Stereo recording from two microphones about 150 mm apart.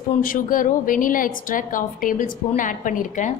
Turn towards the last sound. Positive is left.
turn(degrees=60)  # may be behind; listen again after turning